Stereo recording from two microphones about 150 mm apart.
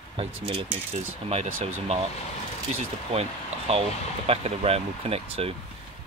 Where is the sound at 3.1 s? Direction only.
45° right (ahead or behind).